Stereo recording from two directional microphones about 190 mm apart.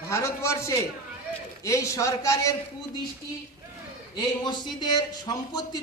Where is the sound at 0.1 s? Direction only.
15° left (ahead or behind).